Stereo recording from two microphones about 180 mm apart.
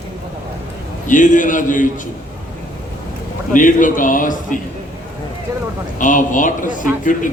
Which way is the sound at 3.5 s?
45° left (ahead or behind).